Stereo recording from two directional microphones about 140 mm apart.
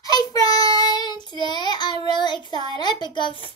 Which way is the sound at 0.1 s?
25° left (ahead or behind).